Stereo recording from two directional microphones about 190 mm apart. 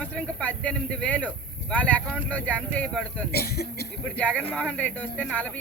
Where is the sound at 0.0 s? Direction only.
5° left (ahead or behind).